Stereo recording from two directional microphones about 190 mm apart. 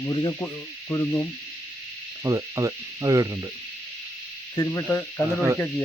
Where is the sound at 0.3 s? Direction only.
10° left (ahead or behind).